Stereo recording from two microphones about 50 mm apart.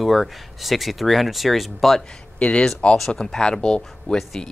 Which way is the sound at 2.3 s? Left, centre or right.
Left.